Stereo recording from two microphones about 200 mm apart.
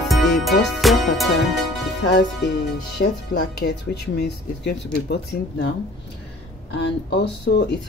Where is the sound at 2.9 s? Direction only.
50° left (ahead or behind).